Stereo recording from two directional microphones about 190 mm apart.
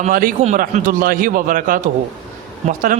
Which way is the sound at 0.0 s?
50° right (ahead or behind).